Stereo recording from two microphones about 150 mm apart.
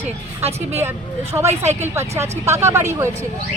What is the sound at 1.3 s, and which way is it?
Speech, 15° right (ahead or behind).